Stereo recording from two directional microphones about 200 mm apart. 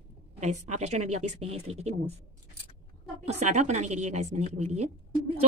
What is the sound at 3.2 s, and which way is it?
Speech, 35° right (ahead or behind).